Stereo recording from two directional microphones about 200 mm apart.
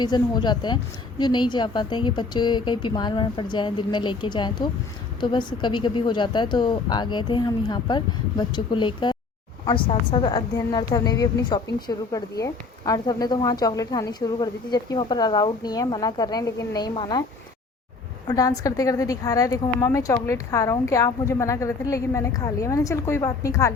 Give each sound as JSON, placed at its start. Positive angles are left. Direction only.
{"t": 0.0, "sound": "a woman's voice", "side_deg": 20}
{"t": 18.3, "sound": "speech", "side_deg": 15}